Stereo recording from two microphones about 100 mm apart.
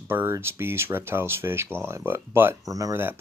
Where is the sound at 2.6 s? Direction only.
35° right (ahead or behind).